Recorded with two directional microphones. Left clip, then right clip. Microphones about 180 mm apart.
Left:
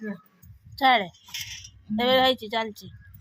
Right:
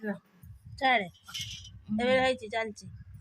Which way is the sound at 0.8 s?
5° left (ahead or behind).